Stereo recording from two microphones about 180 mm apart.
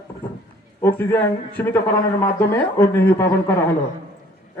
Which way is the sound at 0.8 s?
10° left (ahead or behind).